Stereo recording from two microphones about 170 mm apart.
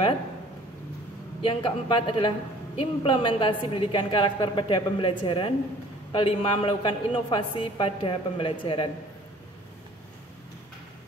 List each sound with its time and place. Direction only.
1.4 s a man's voice: 30° left (ahead or behind)